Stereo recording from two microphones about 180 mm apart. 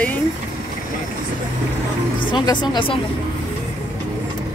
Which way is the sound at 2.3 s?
25° left (ahead or behind).